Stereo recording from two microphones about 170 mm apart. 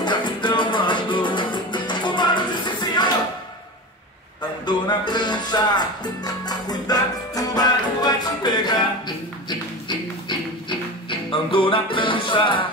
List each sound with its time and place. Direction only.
0.0 s music: 25° left (ahead or behind)
4.6 s music: 25° left (ahead or behind)